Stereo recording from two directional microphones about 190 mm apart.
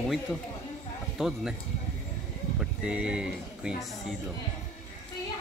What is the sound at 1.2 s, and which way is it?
Speech, centre (ahead or behind).